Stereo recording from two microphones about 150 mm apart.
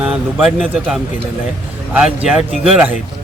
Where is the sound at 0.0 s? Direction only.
5° right (ahead or behind).